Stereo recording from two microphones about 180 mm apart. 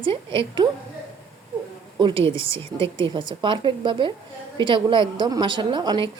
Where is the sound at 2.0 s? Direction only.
30° right (ahead or behind).